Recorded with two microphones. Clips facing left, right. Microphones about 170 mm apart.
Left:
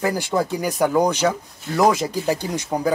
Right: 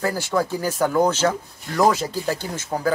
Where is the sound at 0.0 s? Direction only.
15° left (ahead or behind).